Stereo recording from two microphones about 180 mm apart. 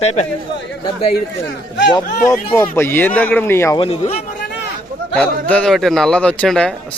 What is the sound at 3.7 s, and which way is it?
Speech, 30° left (ahead or behind).